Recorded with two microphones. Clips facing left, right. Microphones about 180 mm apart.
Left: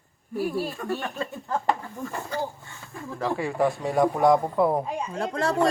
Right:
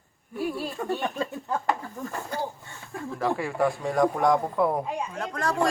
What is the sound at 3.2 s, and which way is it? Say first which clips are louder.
Speech: left 1 dB; centre (ahead or behind).